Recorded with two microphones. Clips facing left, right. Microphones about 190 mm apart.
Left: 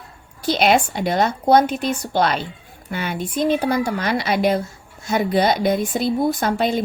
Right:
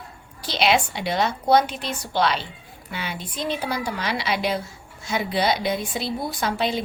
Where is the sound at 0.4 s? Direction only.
50° left (ahead or behind).